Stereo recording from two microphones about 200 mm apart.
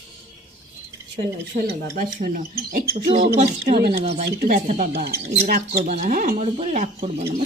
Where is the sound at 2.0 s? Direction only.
40° right (ahead or behind).